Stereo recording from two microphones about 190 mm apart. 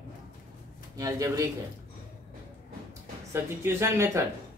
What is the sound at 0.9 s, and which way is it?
Speech, 20° right (ahead or behind).